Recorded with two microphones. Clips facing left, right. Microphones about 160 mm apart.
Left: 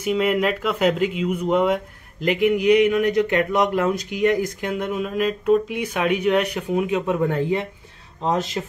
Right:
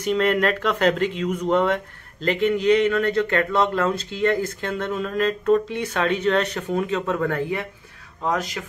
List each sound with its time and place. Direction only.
0.0 s speech: 10° left (ahead or behind); by 8.6 s 25° left (ahead or behind)